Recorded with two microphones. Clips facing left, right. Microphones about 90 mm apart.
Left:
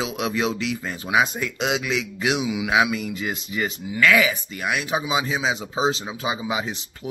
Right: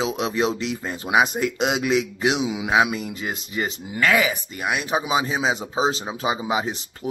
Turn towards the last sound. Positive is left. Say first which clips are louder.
# right 3 dB
turn(degrees=-40)  # may be behind; listen again after turning